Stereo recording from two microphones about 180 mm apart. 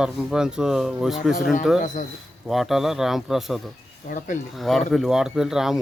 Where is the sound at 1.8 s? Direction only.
45° left (ahead or behind).